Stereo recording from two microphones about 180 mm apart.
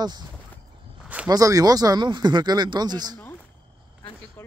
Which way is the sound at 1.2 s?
20° right (ahead or behind).